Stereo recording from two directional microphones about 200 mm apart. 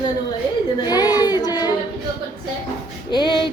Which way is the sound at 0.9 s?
20° left (ahead or behind).